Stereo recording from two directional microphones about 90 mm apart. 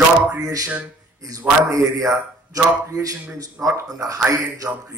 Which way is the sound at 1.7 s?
40° right (ahead or behind).